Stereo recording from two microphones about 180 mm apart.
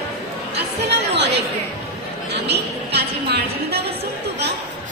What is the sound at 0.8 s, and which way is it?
Chatter, 70° right (ahead or behind).